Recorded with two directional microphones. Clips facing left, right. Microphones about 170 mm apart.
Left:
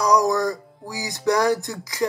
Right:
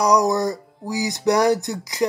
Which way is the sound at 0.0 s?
20° right (ahead or behind).